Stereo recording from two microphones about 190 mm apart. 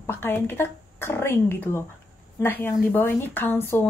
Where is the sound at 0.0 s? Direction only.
10° left (ahead or behind).